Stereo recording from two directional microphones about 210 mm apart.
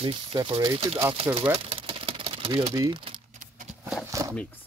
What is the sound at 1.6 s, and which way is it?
Typewriter, 25° right (ahead or behind).